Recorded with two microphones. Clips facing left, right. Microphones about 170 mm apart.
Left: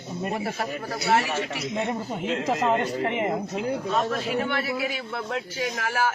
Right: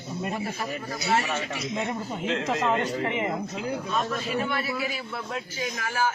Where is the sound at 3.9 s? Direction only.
70° left (ahead or behind).